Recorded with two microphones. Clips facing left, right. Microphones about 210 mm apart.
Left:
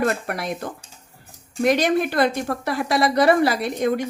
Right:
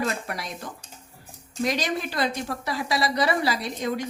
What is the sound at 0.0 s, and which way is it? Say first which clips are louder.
A woman's voice: left 6 dB; 55° left (ahead or behind).